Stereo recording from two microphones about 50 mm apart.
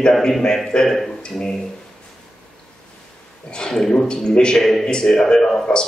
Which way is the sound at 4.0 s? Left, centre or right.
Centre.